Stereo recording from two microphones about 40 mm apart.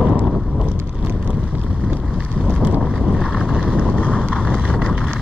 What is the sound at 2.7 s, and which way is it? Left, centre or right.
Vehicle, right.